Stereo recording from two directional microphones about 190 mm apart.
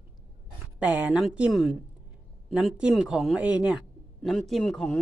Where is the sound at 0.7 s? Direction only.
10° right (ahead or behind).